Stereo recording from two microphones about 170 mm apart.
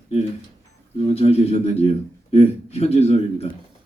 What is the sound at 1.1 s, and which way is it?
Speech, 35° left (ahead or behind).